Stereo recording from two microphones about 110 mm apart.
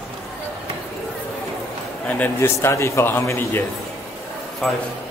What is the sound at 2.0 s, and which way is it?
A man's voice, 15° left (ahead or behind).